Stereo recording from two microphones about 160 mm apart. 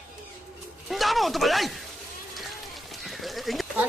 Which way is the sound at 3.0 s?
Centre (ahead or behind).